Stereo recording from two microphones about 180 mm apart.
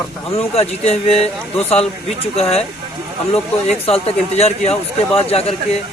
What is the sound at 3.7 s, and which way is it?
Speech, 35° left (ahead or behind).